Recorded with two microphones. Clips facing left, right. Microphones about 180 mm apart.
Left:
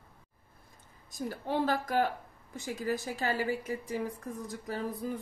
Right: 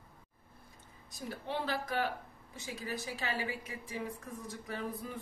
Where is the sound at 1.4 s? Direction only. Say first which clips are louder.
Left 6 dB; 45° left (ahead or behind).